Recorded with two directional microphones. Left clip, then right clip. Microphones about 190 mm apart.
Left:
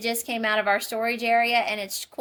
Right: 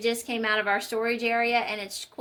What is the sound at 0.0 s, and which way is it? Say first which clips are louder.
A woman's voice: left 1 dB; 65° left (ahead or behind).